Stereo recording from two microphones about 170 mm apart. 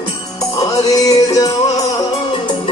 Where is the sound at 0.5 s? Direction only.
20° left (ahead or behind).